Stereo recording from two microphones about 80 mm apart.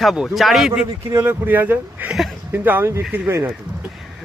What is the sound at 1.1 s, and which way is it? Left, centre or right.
Speech, right.